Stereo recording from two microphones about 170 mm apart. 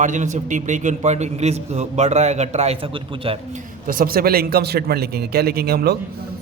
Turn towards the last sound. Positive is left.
turn(degrees=-65)  # may be behind; listen again after turning